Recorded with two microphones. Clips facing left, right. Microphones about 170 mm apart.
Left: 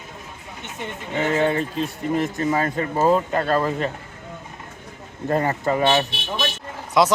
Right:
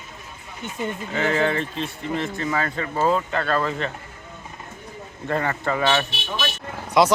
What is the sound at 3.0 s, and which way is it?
Speech, 15° left (ahead or behind).